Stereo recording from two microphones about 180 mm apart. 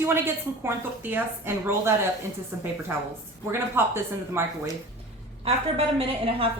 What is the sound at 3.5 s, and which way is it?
Speech, 15° right (ahead or behind).